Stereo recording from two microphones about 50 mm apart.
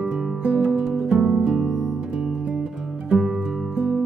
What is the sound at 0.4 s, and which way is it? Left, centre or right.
Music, centre.